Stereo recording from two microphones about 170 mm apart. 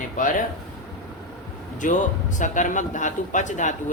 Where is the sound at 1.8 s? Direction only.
50° left (ahead or behind).